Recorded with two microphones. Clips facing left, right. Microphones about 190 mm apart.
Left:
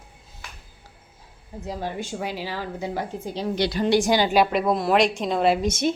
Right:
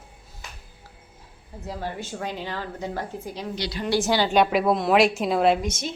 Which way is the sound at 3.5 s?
50° left (ahead or behind).